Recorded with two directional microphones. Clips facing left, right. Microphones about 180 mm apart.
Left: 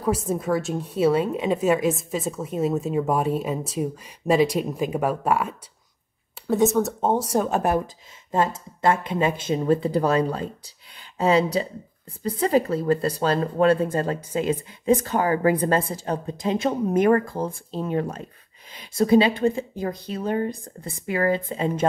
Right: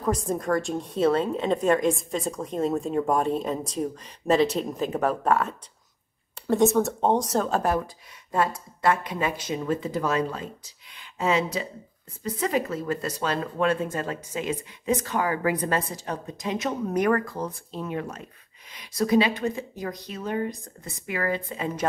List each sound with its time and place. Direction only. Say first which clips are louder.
0.0 s a woman's voice: left 2 dB; 5° left (ahead or behind); by 21.8 s 30° left (ahead or behind)